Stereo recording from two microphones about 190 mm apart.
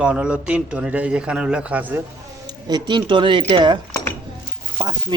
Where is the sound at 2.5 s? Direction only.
20° right (ahead or behind).